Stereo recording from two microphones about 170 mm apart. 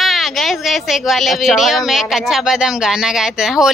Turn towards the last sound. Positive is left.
turn(degrees=0)  # may be behind; listen again after turning